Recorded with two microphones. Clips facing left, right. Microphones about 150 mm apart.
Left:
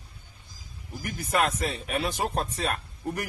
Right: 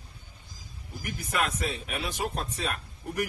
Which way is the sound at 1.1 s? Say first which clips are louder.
Left 4 dB; 45° left (ahead or behind).